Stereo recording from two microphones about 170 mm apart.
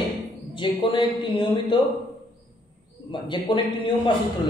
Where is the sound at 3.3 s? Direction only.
25° left (ahead or behind).